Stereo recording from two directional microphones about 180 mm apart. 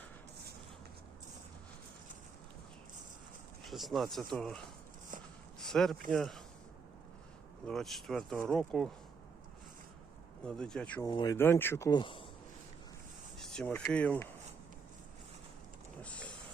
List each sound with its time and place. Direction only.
3.6 s speech: centre (ahead or behind)
5.5 s a sound: centre (ahead or behind)
6.1 s speech: centre (ahead or behind)
7.7 s speech: centre (ahead or behind)
10.4 s speech: 5° left (ahead or behind)
11.0 s speech: 20° left (ahead or behind)
13.4 s speech: 5° left (ahead or behind)
16.0 s a sound: 5° left (ahead or behind)